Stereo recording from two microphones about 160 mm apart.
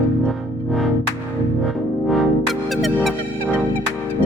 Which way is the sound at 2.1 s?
Centre (ahead or behind).